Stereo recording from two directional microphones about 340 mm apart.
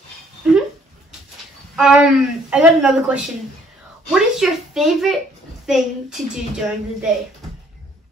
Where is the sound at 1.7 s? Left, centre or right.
Centre.